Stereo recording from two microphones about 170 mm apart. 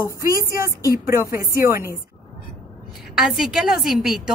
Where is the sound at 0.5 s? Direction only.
15° right (ahead or behind).